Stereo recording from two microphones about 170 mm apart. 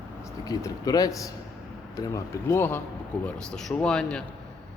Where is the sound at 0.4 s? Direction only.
20° left (ahead or behind); by 4.2 s 5° left (ahead or behind).